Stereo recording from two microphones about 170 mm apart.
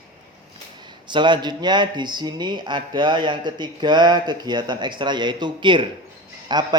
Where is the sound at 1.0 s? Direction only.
25° right (ahead or behind).